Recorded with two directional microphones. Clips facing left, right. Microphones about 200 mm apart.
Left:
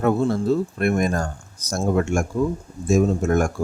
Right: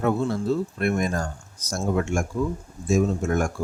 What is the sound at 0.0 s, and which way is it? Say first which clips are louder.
Speech: left 4 dB; 45° left (ahead or behind).